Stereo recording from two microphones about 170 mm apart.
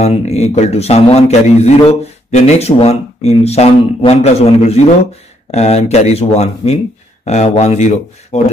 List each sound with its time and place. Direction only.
0.0 s a man's voice: 40° left (ahead or behind)